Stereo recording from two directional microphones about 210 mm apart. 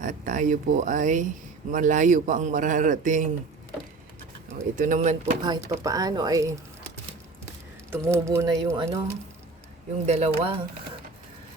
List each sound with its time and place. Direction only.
0.0 s a man's voice: 40° right (ahead or behind)
4.5 s a man's voice: 35° right (ahead or behind)
5.4 s speech: 20° right (ahead or behind)
7.9 s speech: 10° right (ahead or behind)
10.1 s a man's voice: 30° right (ahead or behind)